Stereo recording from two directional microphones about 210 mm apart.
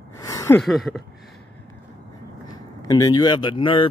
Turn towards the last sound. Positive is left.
turn(degrees=25)  # may be behind; listen again after turning